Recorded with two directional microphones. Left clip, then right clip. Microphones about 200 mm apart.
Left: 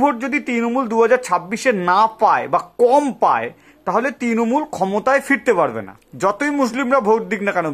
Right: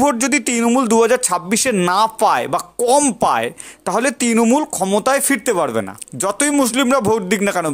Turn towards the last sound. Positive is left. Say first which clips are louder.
# right 1 dB
turn(degrees=-30)  # may be behind; listen again after turning